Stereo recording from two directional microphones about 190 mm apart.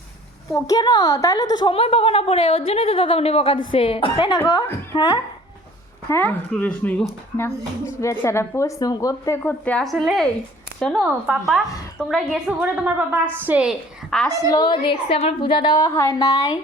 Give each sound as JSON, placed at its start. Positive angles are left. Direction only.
{"t": 0.5, "sound": "a woman's voice", "side_deg": 20}
{"t": 14.3, "sound": "a woman's voice", "side_deg": 20}